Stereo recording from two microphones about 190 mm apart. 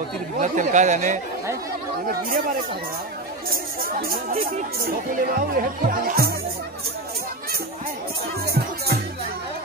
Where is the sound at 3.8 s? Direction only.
50° right (ahead or behind).